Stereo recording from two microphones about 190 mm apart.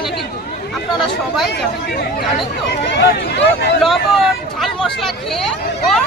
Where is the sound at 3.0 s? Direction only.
60° left (ahead or behind).